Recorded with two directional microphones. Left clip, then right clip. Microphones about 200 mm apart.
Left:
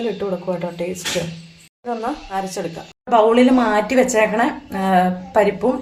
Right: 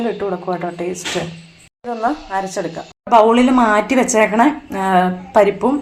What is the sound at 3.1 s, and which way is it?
Speech, 15° right (ahead or behind).